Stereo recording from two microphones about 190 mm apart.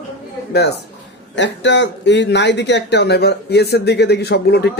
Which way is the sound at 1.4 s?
70° left (ahead or behind).